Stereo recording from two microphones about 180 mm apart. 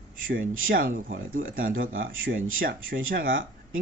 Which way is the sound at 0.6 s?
50° right (ahead or behind).